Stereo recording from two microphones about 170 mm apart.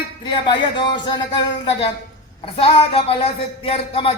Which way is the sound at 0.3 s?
25° left (ahead or behind).